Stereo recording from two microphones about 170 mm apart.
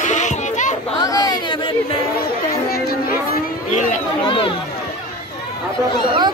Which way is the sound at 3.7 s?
50° left (ahead or behind).